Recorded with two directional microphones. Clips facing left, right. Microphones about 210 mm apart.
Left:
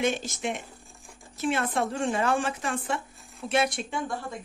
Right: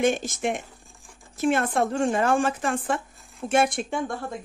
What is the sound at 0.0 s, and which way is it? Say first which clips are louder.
Speech: right 4 dB; 50° right (ahead or behind).